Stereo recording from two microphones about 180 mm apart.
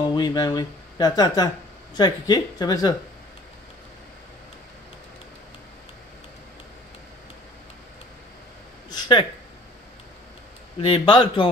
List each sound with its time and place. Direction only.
0.1 s speech: 20° left (ahead or behind)
8.9 s a sound: 25° left (ahead or behind)
10.8 s speech: 30° left (ahead or behind)